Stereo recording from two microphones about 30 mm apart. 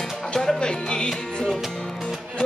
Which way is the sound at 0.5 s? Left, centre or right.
Left.